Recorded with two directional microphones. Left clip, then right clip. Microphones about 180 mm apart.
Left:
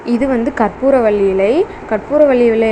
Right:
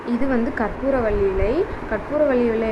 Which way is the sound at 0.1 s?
25° left (ahead or behind).